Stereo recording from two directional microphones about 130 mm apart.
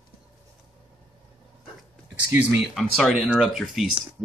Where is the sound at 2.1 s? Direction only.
15° right (ahead or behind).